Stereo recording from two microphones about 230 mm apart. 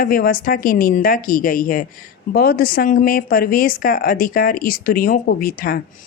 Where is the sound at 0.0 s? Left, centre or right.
Left.